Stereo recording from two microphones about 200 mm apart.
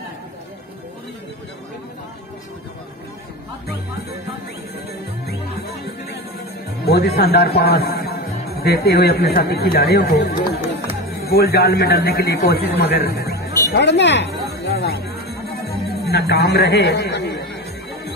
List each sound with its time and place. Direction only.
6.9 s a man's voice: 55° left (ahead or behind)